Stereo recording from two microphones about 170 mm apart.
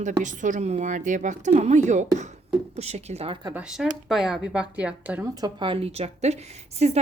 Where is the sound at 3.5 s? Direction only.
5° right (ahead or behind).